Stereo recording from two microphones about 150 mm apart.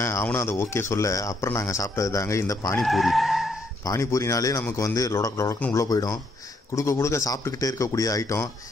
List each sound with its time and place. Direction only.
0.0 s speech: 15° left (ahead or behind)
2.8 s speech: centre (ahead or behind)
3.8 s speech: 20° left (ahead or behind)